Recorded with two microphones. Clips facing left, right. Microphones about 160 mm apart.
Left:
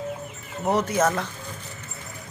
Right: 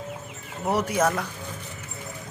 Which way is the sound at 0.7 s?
10° right (ahead or behind).